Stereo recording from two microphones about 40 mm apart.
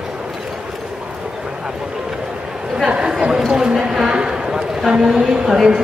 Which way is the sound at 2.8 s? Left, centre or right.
Right.